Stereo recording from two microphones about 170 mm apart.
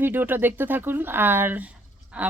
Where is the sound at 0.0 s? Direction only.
10° right (ahead or behind).